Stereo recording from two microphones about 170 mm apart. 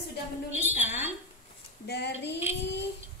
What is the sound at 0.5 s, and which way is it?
Speech, 10° right (ahead or behind).